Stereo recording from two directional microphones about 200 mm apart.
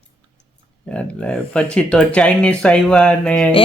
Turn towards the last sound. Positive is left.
turn(degrees=5)  # may be behind; listen again after turning